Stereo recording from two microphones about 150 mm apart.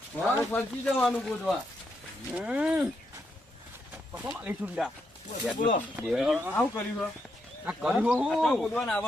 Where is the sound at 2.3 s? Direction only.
5° right (ahead or behind).